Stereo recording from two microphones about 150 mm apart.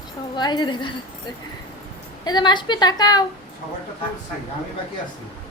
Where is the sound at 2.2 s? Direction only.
30° left (ahead or behind).